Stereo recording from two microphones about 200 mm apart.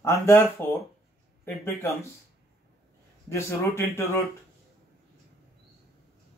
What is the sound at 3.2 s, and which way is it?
Speech, 15° left (ahead or behind).